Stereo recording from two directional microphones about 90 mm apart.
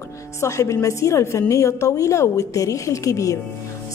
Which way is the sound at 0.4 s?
35° left (ahead or behind).